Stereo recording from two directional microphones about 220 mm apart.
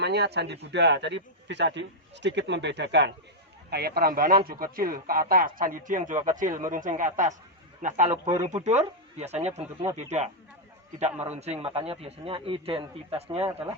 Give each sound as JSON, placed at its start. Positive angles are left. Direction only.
{"t": 0.0, "sound": "a man's voice", "side_deg": -50}
{"t": 8.1, "sound": "speech", "side_deg": -15}
{"t": 8.4, "sound": "a man's voice", "side_deg": -30}